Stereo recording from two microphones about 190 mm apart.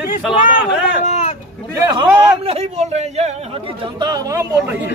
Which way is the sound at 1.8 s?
15° right (ahead or behind).